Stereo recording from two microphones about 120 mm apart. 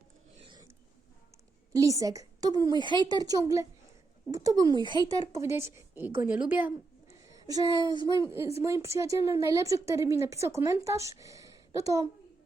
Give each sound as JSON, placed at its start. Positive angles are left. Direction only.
{"t": 1.7, "sound": "a woman's voice", "side_deg": -30}
{"t": 5.3, "sound": "a woman's voice", "side_deg": -25}
{"t": 7.3, "sound": "a sound", "side_deg": -30}
{"t": 7.9, "sound": "a woman's voice", "side_deg": -40}
{"t": 8.2, "sound": "a woman's voice", "side_deg": -25}